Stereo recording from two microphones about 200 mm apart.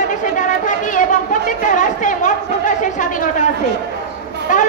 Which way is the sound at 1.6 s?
40° left (ahead or behind).